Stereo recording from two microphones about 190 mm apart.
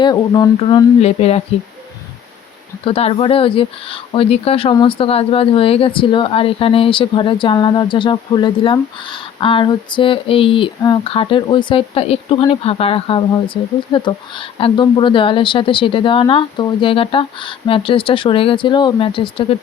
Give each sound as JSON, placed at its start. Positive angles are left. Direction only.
{"t": 0.0, "sound": "speech", "side_deg": 20}
{"t": 2.8, "sound": "speech", "side_deg": 30}